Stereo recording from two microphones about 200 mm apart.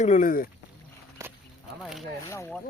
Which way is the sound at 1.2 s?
15° right (ahead or behind).